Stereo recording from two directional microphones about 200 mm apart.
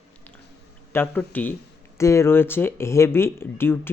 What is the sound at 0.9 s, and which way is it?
Speech, 10° left (ahead or behind).